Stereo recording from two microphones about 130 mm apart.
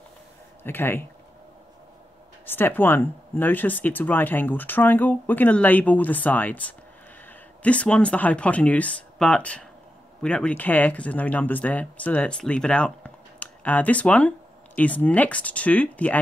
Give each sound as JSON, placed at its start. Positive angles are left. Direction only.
{"t": 0.7, "sound": "speech", "side_deg": 15}
{"t": 2.4, "sound": "speech", "side_deg": 15}